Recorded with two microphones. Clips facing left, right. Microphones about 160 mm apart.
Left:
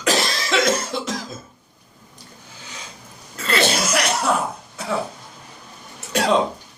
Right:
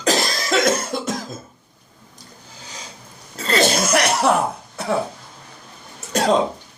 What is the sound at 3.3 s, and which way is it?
Cough, 40° right (ahead or behind).